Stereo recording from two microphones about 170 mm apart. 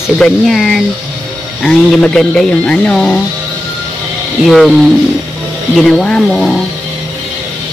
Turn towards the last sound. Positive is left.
turn(degrees=5)  # may be behind; listen again after turning